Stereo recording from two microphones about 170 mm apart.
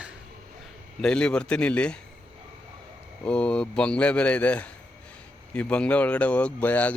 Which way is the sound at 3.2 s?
5° left (ahead or behind).